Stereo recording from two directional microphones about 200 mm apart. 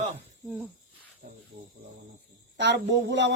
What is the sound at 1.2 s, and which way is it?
Cricket, 50° right (ahead or behind).